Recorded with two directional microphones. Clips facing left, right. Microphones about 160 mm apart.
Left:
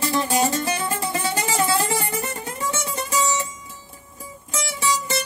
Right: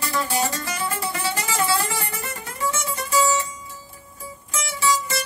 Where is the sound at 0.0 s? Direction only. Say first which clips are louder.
Left 3 dB; 25° left (ahead or behind).